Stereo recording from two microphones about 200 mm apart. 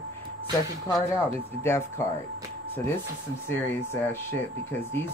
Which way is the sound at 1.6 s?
10° left (ahead or behind).